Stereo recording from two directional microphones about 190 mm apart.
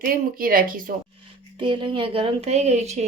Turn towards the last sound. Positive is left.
turn(degrees=-35)  # may be behind; listen again after turning